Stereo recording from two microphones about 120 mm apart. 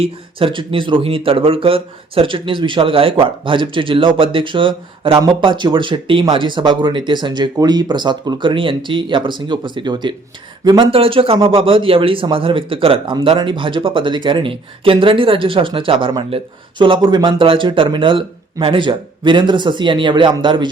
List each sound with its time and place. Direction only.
0.0 s speech: 50° right (ahead or behind)
10.9 s speech: 50° right (ahead or behind)